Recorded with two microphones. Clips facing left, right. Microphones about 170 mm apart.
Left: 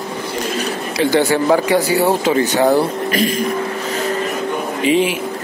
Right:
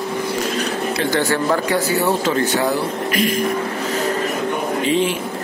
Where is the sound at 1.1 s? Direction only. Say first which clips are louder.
Left 6 dB; 15° left (ahead or behind).